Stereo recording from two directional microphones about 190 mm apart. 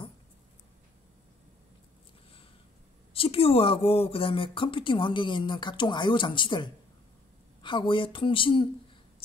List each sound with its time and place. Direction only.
3.1 s speech: 30° left (ahead or behind)